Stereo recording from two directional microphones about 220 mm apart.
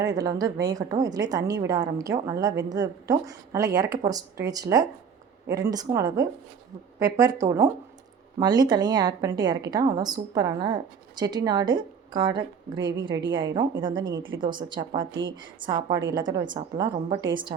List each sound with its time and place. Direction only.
0.0 s a woman's voice: 15° right (ahead or behind)
14.2 s speech: 60° right (ahead or behind)
14.4 s a woman's voice: 20° right (ahead or behind)